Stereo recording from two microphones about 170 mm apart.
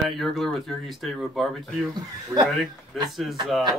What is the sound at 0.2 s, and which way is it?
Speech, centre (ahead or behind).